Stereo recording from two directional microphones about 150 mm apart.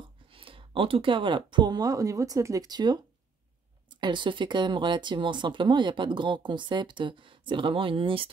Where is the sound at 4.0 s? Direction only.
30° right (ahead or behind).